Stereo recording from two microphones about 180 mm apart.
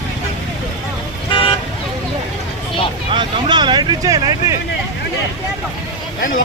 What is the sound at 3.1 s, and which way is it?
Vehicle, 25° right (ahead or behind).